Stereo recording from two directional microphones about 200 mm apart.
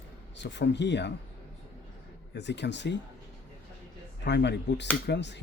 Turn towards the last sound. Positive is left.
turn(degrees=60)  # may be behind; listen again after turning